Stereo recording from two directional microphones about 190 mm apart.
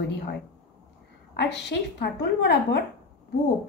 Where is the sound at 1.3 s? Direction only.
65° left (ahead or behind).